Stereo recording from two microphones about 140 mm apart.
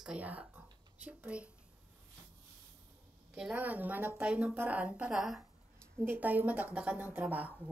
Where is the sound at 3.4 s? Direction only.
10° right (ahead or behind).